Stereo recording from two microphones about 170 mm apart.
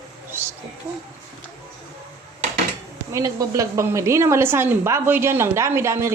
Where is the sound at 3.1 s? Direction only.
20° right (ahead or behind).